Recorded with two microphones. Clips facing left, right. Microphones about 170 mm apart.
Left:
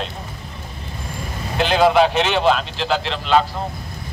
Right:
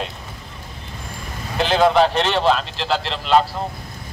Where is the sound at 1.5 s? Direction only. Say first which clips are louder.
Left 1 dB; centre (ahead or behind).